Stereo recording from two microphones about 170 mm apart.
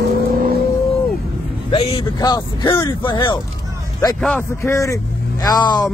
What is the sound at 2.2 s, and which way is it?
Speech, 25° left (ahead or behind).